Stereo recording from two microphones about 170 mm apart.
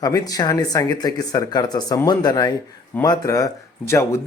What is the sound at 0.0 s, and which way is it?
Speech, 20° left (ahead or behind).